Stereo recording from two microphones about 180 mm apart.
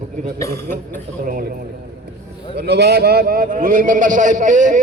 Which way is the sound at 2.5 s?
65° right (ahead or behind).